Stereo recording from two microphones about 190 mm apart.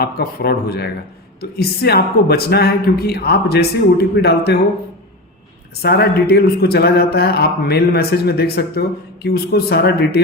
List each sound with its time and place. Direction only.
0.0 s speech: 55° left (ahead or behind)
5.8 s speech: 60° left (ahead or behind)